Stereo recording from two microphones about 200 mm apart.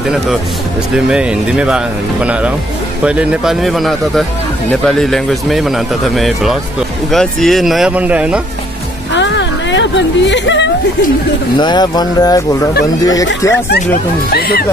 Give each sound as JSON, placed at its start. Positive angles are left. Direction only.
{"t": 0.9, "sound": "speech", "side_deg": -5}
{"t": 3.0, "sound": "speech", "side_deg": -5}
{"t": 9.1, "sound": "a sound", "side_deg": 60}
{"t": 11.5, "sound": "speech", "side_deg": 20}
{"t": 14.3, "sound": "speech", "side_deg": 50}